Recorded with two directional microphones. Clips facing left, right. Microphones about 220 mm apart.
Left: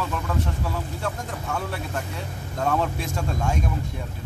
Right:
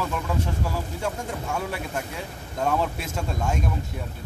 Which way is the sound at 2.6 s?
5° right (ahead or behind).